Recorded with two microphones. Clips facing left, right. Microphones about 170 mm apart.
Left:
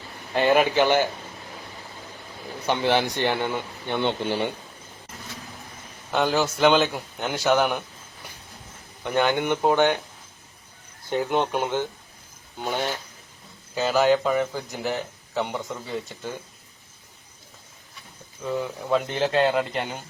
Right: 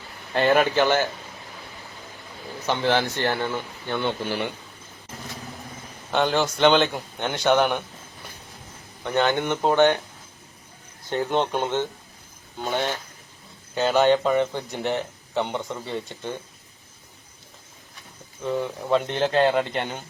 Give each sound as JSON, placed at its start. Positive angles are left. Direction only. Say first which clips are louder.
{"t": 0.3, "sound": "speech", "louder": "even", "side_deg": 10}
{"t": 2.6, "sound": "speech", "louder": "even", "side_deg": 15}
{"t": 6.1, "sound": "a man's voice", "louder": "even", "side_deg": 5}
{"t": 9.0, "sound": "speech", "louder": "even", "side_deg": 10}
{"t": 11.1, "sound": "a man's voice", "louder": "even", "side_deg": 10}
{"t": 18.4, "sound": "a man's voice", "louder": "right 1 dB", "side_deg": 0}